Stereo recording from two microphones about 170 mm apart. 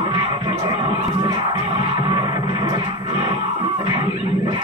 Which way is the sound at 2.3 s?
40° left (ahead or behind).